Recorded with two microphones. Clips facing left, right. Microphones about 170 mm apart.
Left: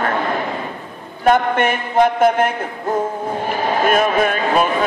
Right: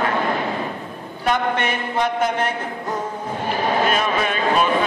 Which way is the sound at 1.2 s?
50° left (ahead or behind).